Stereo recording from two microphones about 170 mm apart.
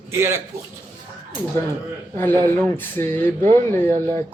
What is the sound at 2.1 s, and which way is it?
Speech, 10° left (ahead or behind).